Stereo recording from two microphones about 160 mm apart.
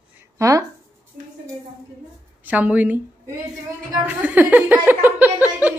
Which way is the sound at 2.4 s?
10° right (ahead or behind).